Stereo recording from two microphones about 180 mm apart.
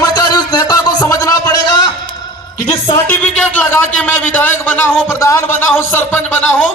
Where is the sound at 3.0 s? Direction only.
10° left (ahead or behind).